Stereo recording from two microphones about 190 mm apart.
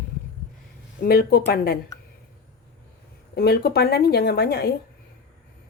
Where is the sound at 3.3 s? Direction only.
55° left (ahead or behind).